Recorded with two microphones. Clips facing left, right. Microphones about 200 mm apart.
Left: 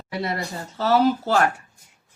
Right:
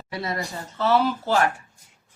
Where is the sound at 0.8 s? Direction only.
40° left (ahead or behind).